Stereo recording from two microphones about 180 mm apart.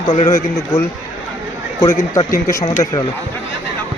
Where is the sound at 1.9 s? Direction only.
15° left (ahead or behind).